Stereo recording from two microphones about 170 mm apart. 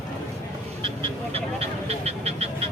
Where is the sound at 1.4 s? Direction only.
35° right (ahead or behind).